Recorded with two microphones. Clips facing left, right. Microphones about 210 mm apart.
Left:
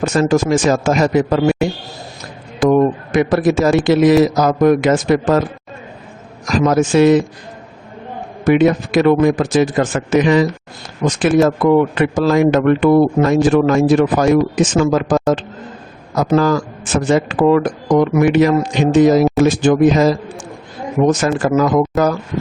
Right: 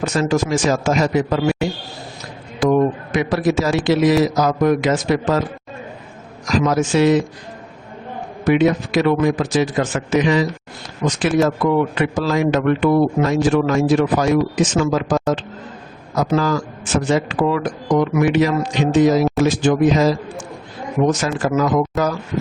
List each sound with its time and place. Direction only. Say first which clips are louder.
0.0 s a man's voice: left 4 dB; 50° left (ahead or behind)
6.5 s a man's voice: left 3 dB; 50° left (ahead or behind)
8.4 s a man's voice: left 3 dB; 50° left (ahead or behind)
21.1 s a man's voice: left 4 dB; 50° left (ahead or behind)